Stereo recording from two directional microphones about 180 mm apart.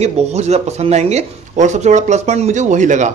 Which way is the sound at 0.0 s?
35° right (ahead or behind).